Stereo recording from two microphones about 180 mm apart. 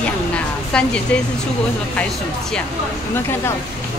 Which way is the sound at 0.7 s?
5° left (ahead or behind).